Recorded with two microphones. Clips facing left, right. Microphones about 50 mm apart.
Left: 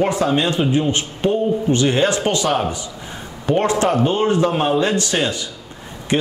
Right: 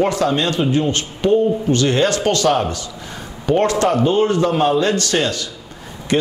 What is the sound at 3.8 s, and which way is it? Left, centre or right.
A man's voice, centre.